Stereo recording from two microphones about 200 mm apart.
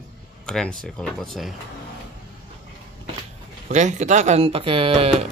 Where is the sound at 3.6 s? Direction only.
35° right (ahead or behind).